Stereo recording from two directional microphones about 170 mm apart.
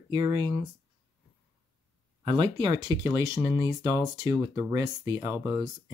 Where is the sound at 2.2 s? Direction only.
30° right (ahead or behind).